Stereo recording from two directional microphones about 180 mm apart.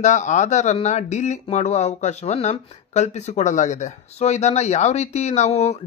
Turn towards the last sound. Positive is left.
turn(degrees=40)  # may be behind; listen again after turning